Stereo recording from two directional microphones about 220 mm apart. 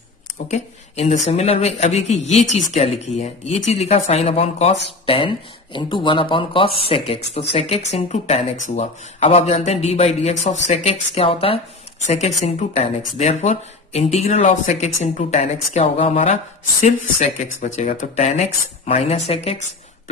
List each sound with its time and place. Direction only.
0.5 s speech: 30° left (ahead or behind)
17.6 s speech: 30° left (ahead or behind)